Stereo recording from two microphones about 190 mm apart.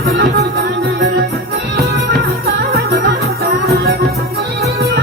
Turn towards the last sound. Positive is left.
turn(degrees=-60)  # may be behind; listen again after turning